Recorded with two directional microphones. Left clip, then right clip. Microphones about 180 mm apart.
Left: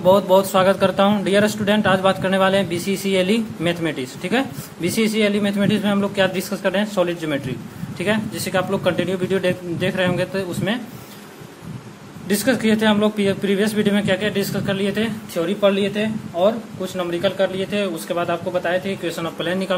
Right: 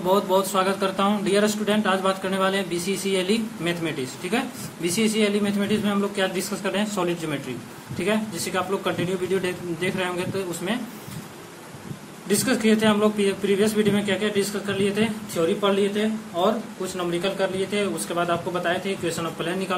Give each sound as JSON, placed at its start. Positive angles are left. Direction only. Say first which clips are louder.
{"t": 0.1, "sound": "a man's voice", "louder": "left 6 dB", "side_deg": 50}
{"t": 8.0, "sound": "a man's voice", "louder": "left 3 dB", "side_deg": 55}
{"t": 12.3, "sound": "a man's voice", "louder": "left 3 dB", "side_deg": 45}